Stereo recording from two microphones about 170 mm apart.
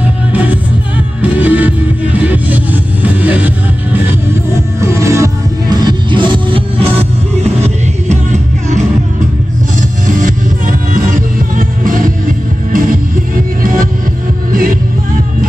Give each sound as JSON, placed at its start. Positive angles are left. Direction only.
{"t": 1.2, "sound": "music", "side_deg": -10}
{"t": 4.7, "sound": "music", "side_deg": -15}